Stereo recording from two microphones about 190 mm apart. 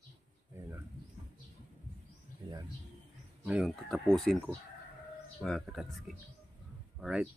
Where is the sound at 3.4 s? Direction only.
Centre (ahead or behind).